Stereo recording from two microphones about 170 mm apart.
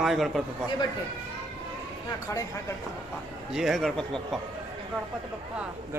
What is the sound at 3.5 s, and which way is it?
Speech, centre (ahead or behind).